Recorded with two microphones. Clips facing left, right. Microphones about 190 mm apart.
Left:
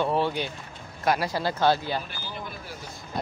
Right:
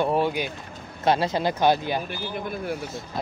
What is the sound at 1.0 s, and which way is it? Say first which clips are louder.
Speech: right 3 dB; 25° right (ahead or behind).